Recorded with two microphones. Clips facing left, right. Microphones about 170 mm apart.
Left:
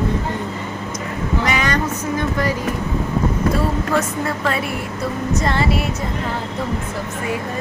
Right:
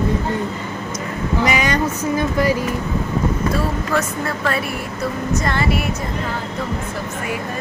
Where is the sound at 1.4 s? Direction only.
10° right (ahead or behind).